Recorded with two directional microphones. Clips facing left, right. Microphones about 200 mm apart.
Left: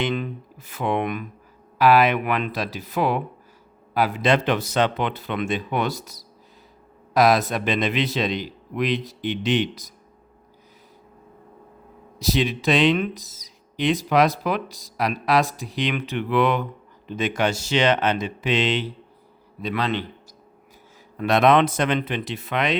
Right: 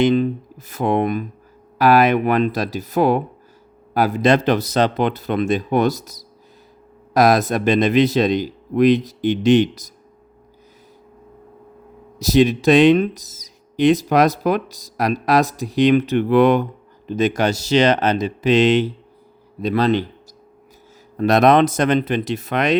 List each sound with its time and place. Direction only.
0.0 s speech: 40° right (ahead or behind)
12.2 s speech: 45° right (ahead or behind)
21.2 s speech: 40° right (ahead or behind)